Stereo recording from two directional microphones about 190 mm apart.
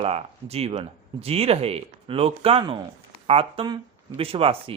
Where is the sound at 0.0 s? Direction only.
30° right (ahead or behind).